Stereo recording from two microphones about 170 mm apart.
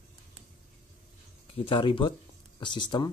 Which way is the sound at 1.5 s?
30° left (ahead or behind).